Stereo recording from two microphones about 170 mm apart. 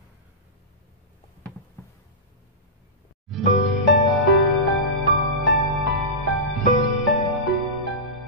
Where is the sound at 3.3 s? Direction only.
Centre (ahead or behind).